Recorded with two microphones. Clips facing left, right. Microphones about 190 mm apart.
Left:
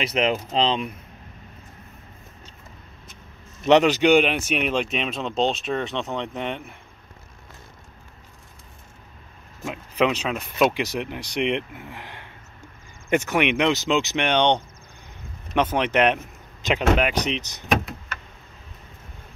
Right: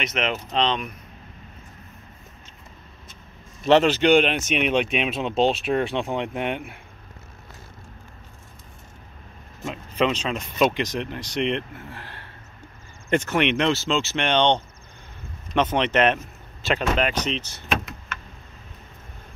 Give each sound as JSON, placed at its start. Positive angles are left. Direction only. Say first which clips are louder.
{"t": 0.0, "sound": "speech", "louder": "left 4 dB", "side_deg": 30}
{"t": 3.6, "sound": "speech", "louder": "left 1 dB", "side_deg": 15}
{"t": 4.6, "sound": "speech", "louder": "right 2 dB", "side_deg": 0}
{"t": 9.6, "sound": "speech", "louder": "left 1 dB", "side_deg": 5}